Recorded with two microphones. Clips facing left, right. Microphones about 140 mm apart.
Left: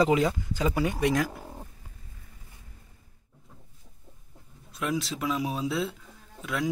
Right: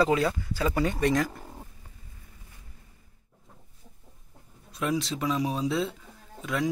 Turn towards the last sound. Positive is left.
turn(degrees=0)  # may be behind; listen again after turning